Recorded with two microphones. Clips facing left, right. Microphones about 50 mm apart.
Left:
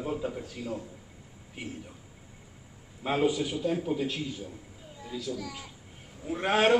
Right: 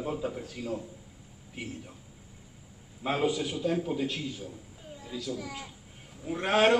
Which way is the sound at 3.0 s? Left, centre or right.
Centre.